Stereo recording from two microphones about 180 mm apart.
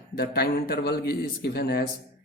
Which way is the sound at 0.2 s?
65° left (ahead or behind).